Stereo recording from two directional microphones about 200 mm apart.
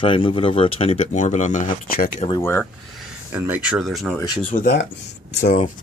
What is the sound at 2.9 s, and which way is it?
Speech, 10° right (ahead or behind).